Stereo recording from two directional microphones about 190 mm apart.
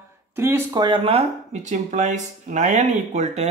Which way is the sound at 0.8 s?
25° right (ahead or behind).